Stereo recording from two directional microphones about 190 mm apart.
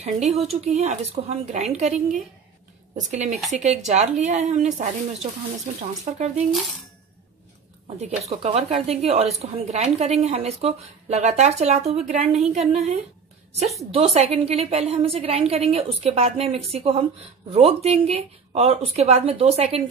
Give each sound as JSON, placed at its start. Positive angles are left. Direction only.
{"t": 0.0, "sound": "a woman's voice", "side_deg": -35}
{"t": 3.0, "sound": "a woman's voice", "side_deg": -40}
{"t": 8.3, "sound": "a woman's voice", "side_deg": -35}